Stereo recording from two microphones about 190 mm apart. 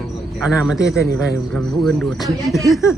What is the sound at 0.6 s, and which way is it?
Speech, 5° right (ahead or behind).